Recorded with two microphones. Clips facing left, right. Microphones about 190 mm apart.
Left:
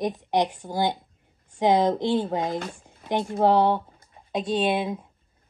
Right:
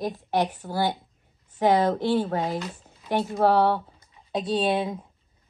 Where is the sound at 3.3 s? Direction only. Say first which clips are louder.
Left 1 dB; 15° left (ahead or behind).